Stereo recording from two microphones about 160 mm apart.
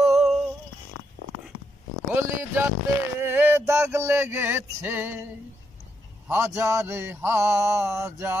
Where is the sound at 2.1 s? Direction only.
15° right (ahead or behind).